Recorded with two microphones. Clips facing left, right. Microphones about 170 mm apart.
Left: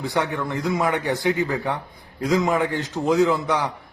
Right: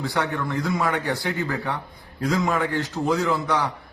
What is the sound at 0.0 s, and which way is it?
A man's voice, 15° left (ahead or behind).